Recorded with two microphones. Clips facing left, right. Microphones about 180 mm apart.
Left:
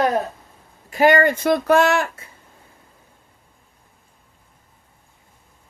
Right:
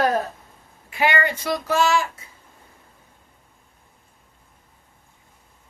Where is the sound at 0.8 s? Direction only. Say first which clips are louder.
Left 7 dB; 45° left (ahead or behind); by 2.2 s 60° left (ahead or behind).